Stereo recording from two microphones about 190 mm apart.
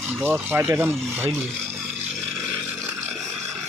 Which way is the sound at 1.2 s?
5° right (ahead or behind).